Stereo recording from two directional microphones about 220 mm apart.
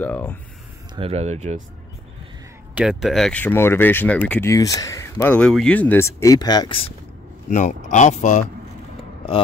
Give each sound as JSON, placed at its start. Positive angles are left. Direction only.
{"t": 0.0, "sound": "speech", "side_deg": 10}
{"t": 0.9, "sound": "speech", "side_deg": -30}
{"t": 2.7, "sound": "speech", "side_deg": -5}
{"t": 7.4, "sound": "speech", "side_deg": 35}